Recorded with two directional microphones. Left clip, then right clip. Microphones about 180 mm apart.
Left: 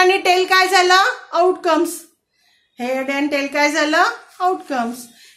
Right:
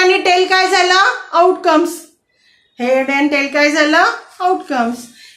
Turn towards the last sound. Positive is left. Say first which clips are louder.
# right 4 dB
turn(degrees=50)  # may be behind; listen again after turning